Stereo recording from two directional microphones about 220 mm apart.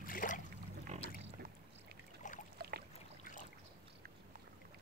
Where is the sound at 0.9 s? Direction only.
30° right (ahead or behind).